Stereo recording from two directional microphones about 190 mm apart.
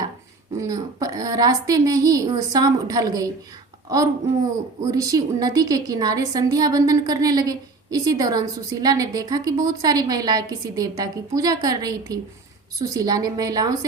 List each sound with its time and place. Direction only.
0.5 s a woman's voice: 20° right (ahead or behind)
4.8 s a woman's voice: 15° right (ahead or behind)